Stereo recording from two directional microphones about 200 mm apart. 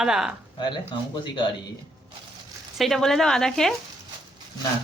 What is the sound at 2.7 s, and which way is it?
Speech, centre (ahead or behind).